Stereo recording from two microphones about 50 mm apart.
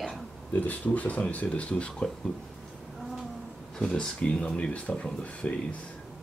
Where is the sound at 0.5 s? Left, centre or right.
Left.